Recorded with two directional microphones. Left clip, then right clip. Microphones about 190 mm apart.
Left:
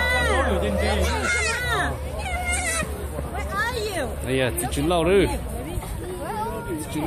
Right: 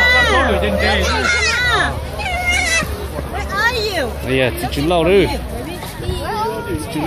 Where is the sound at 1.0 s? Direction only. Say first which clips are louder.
Right 8 dB; 50° right (ahead or behind).